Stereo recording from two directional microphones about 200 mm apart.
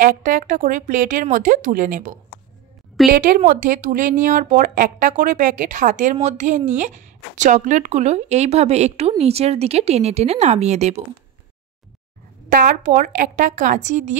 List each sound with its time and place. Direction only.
0.0 s a woman's voice: 40° right (ahead or behind)
12.4 s a woman's voice: 40° right (ahead or behind)